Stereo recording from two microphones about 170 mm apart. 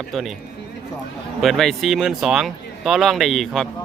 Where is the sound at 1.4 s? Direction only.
Centre (ahead or behind).